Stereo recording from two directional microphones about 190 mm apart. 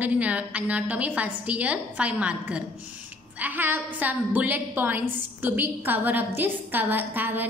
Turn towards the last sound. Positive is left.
turn(degrees=-10)  # may be behind; listen again after turning